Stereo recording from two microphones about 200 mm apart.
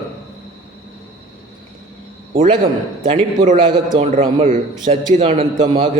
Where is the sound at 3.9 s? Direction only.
35° right (ahead or behind).